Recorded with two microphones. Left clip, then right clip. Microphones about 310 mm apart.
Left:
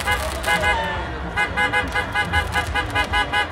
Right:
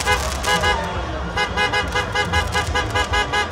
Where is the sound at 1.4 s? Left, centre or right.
Centre.